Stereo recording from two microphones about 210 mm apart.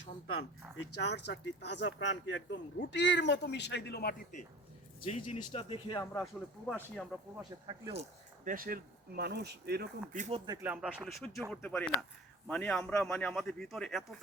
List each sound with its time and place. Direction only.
1.2 s speech: 55° left (ahead or behind)
5.0 s speech: 30° left (ahead or behind)
6.7 s a man's voice: centre (ahead or behind)
7.7 s speech: 25° right (ahead or behind)
8.4 s speech: 45° right (ahead or behind)
10.2 s speech: 30° right (ahead or behind)
10.4 s speech: 20° right (ahead or behind)
10.7 s a man's voice: 5° right (ahead or behind)